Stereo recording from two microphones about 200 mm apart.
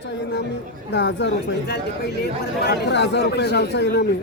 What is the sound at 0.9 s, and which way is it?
Speech, 60° left (ahead or behind).